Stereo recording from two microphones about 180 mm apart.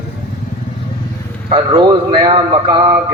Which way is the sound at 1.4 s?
25° right (ahead or behind).